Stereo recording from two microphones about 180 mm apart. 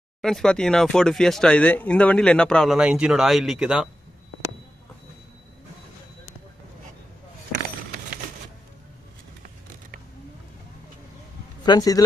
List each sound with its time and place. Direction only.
0.2 s speech: 5° left (ahead or behind)
11.6 s speech: 20° left (ahead or behind)